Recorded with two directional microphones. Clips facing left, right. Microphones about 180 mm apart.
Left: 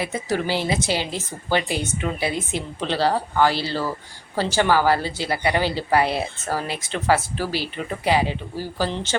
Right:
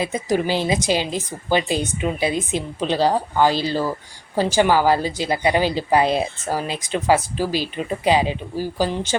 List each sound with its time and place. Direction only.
0.0 s a woman's voice: 15° right (ahead or behind)